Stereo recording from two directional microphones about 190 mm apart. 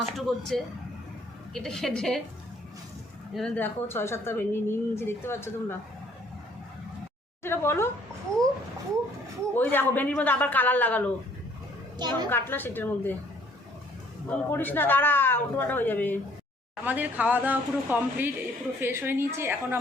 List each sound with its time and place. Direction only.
0.2 s a woman's voice: centre (ahead or behind)
3.3 s speech: 5° left (ahead or behind)
7.4 s speech: 10° left (ahead or behind)
9.6 s speech: 10° left (ahead or behind)
11.9 s a woman's voice: 25° right (ahead or behind)
12.3 s speech: 10° left (ahead or behind)
14.3 s speech: 10° left (ahead or behind)
16.8 s speech: 10° right (ahead or behind)